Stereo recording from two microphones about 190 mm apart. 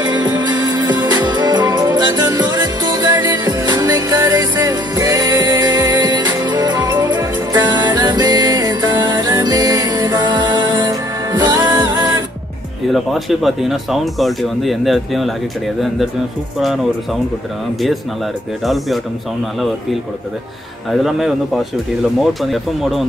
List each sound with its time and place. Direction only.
0.0 s music: 20° right (ahead or behind)
12.9 s speech: centre (ahead or behind)
22.2 s speech: centre (ahead or behind)